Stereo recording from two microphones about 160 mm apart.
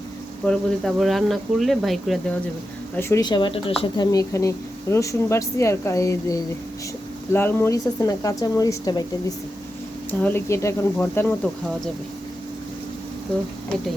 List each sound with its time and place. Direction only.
0.4 s speech: 5° left (ahead or behind)
2.9 s speech: 15° left (ahead or behind)
10.1 s speech: 10° left (ahead or behind)